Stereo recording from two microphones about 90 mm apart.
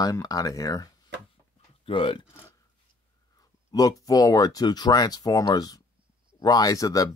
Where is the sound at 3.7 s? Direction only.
40° left (ahead or behind).